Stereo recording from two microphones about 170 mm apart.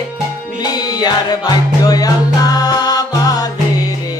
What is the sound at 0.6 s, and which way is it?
Music, 25° left (ahead or behind).